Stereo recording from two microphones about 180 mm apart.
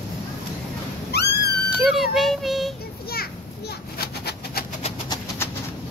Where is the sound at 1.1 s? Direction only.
65° left (ahead or behind).